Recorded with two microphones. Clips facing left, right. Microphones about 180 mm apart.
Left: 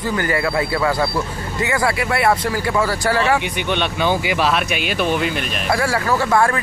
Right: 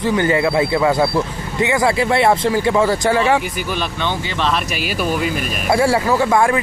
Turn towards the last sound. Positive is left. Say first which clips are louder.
# right 2 dB
turn(degrees=-15)  # may be behind; listen again after turning